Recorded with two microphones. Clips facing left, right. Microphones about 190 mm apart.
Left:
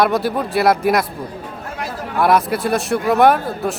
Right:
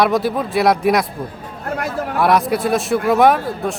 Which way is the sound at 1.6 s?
55° right (ahead or behind).